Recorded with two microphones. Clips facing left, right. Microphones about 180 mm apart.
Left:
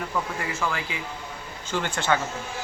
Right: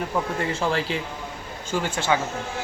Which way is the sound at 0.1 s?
30° right (ahead or behind).